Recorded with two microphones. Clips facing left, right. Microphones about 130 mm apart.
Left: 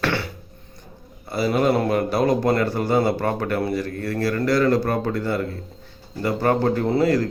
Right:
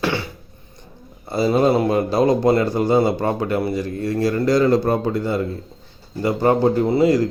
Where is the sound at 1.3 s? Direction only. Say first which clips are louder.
Right 3 dB; 25° right (ahead or behind).